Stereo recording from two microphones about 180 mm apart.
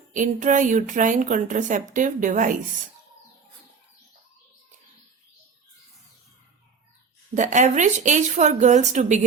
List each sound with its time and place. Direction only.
0.1 s a woman's voice: 45° right (ahead or behind)
7.3 s a woman's voice: 45° right (ahead or behind)